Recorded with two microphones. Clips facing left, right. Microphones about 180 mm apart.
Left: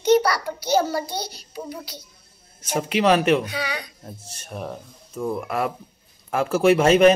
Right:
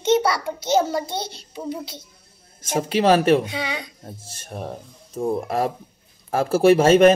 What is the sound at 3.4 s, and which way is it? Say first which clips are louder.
Speech: right 1 dB; 25° right (ahead or behind).